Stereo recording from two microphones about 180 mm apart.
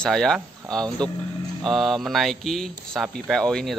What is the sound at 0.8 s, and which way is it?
Speech, 25° right (ahead or behind).